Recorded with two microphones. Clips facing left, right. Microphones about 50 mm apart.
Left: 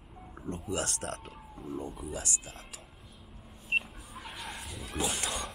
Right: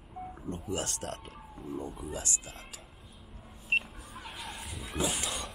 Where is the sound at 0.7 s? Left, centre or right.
Left.